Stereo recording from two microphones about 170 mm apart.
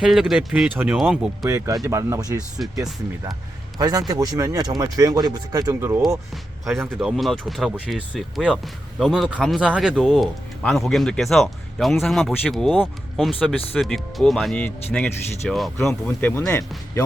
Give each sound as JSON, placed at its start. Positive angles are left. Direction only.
{"t": 0.0, "sound": "speech", "side_deg": -5}
{"t": 1.5, "sound": "speech", "side_deg": -15}
{"t": 6.3, "sound": "speech", "side_deg": 0}